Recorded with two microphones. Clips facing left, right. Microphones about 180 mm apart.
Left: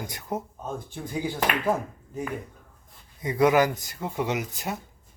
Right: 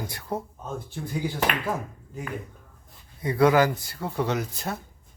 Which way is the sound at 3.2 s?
20° left (ahead or behind).